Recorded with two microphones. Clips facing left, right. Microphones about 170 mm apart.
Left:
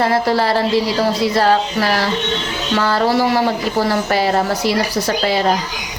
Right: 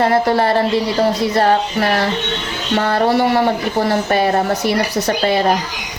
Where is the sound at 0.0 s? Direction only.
25° right (ahead or behind).